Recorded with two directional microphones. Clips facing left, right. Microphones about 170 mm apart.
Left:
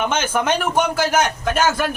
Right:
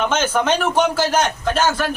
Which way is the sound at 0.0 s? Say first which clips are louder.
Right 2 dB; 10° left (ahead or behind).